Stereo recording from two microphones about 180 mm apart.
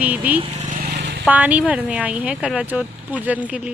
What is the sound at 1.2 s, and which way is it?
Speech, 10° right (ahead or behind).